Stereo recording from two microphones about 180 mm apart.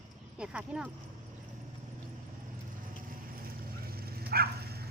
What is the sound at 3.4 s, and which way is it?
Dog, 55° right (ahead or behind).